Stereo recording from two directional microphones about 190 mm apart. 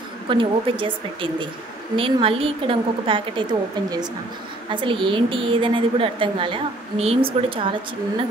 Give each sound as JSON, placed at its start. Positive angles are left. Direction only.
{"t": 0.3, "sound": "a woman's voice", "side_deg": -25}